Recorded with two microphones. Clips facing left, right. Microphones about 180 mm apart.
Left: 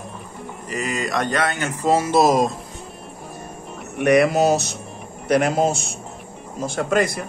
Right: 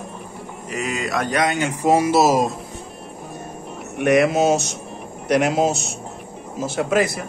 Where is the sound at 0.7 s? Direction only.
Centre (ahead or behind).